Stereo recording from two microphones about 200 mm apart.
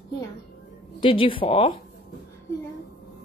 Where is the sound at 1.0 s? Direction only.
25° left (ahead or behind).